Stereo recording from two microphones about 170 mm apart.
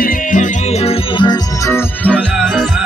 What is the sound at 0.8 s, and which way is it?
Music, 25° left (ahead or behind).